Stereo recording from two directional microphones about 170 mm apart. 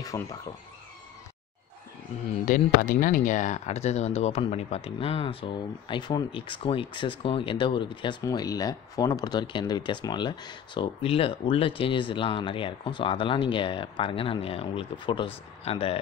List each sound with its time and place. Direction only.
0.1 s speech: 20° left (ahead or behind)
2.4 s speech: 55° left (ahead or behind); by 16.0 s 35° left (ahead or behind)